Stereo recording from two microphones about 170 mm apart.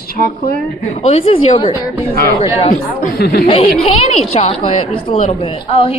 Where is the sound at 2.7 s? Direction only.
60° left (ahead or behind).